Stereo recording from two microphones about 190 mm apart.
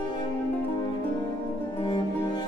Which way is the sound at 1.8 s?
25° left (ahead or behind).